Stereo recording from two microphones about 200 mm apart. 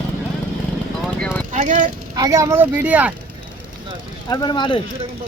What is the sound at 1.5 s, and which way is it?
Clip-clop, 40° right (ahead or behind).